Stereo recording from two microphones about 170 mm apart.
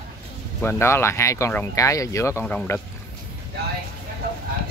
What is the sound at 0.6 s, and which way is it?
Speech, 15° left (ahead or behind).